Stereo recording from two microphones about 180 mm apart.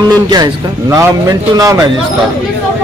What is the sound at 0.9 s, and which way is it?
Speech, 20° right (ahead or behind).